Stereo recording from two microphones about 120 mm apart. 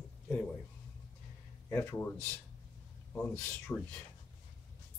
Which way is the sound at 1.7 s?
15° left (ahead or behind).